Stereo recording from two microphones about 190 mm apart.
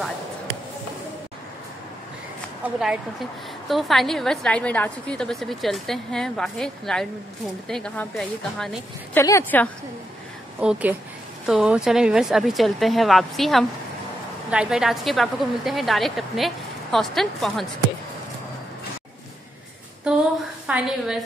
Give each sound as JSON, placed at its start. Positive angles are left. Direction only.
{"t": 2.6, "sound": "a woman's voice", "side_deg": -5}
{"t": 10.6, "sound": "a woman's voice", "side_deg": -5}
{"t": 20.1, "sound": "a woman's voice", "side_deg": -5}